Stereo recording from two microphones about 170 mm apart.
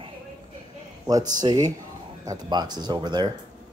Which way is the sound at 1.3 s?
25° right (ahead or behind).